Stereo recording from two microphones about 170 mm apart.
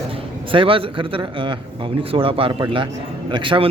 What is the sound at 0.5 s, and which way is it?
A man's voice, 30° right (ahead or behind).